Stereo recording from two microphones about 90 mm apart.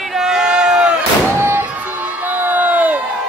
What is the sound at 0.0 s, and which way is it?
Crowd, 5° right (ahead or behind).